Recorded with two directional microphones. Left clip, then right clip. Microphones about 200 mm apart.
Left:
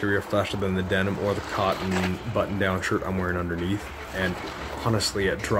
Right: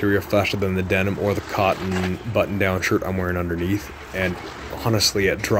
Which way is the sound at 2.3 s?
25° right (ahead or behind).